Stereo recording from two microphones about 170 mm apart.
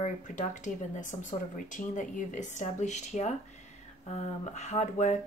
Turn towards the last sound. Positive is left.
turn(degrees=40)  # may be behind; listen again after turning